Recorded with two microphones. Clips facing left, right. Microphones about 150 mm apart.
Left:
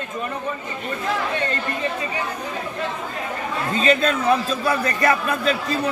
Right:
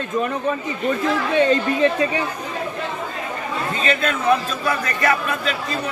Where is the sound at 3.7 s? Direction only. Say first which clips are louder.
Left 4 dB; 35° left (ahead or behind).